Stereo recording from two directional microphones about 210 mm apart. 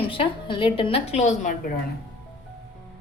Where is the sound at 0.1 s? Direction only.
25° left (ahead or behind).